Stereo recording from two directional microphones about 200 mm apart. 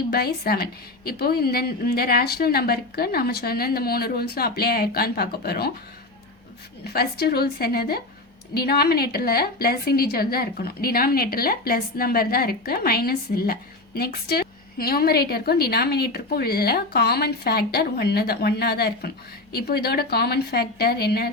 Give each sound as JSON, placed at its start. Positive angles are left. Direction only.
{"t": 0.1, "sound": "a woman's voice", "side_deg": 50}
{"t": 6.8, "sound": "a woman's voice", "side_deg": 50}